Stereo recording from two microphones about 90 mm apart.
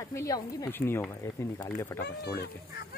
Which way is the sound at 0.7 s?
25° left (ahead or behind).